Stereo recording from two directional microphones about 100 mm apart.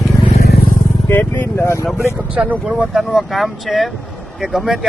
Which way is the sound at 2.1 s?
10° right (ahead or behind).